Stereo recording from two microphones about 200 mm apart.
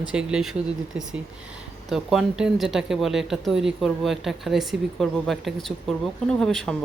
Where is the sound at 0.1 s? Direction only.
5° right (ahead or behind).